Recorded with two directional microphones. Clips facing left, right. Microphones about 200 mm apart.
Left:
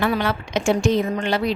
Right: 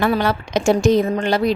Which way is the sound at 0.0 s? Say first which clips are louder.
Right 3 dB; 40° right (ahead or behind).